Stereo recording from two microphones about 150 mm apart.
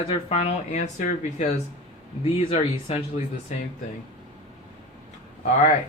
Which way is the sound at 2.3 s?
40° left (ahead or behind).